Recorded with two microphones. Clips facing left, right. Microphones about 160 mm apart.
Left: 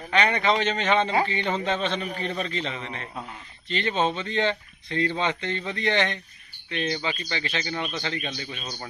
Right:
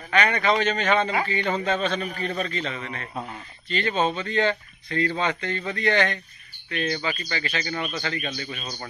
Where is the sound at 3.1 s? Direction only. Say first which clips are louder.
Right 4 dB; 5° right (ahead or behind).